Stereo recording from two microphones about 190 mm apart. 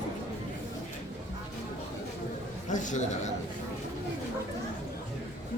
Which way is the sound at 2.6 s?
40° left (ahead or behind).